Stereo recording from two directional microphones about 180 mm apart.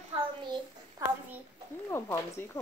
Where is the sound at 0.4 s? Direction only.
25° right (ahead or behind).